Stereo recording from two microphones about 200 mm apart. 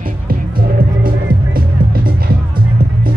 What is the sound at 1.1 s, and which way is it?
Music, 45° right (ahead or behind).